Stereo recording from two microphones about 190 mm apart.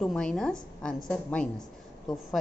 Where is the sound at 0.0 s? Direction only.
5° left (ahead or behind).